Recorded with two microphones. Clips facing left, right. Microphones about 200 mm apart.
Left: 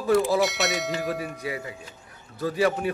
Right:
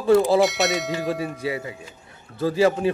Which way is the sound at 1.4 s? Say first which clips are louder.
Right 5 dB; 30° right (ahead or behind).